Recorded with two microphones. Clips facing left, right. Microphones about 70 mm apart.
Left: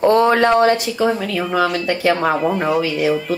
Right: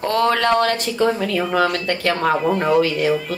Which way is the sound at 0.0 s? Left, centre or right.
Left.